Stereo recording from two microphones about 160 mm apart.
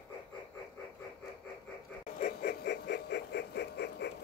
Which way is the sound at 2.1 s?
70° left (ahead or behind).